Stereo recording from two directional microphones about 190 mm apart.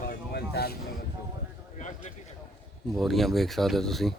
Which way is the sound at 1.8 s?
40° left (ahead or behind).